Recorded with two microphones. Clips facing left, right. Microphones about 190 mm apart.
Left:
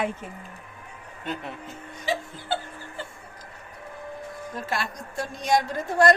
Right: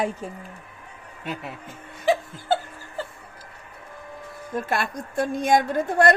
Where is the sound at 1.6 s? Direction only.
50° right (ahead or behind).